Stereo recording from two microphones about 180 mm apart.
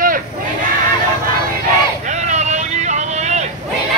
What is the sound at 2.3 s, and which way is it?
Vehicle, 40° right (ahead or behind).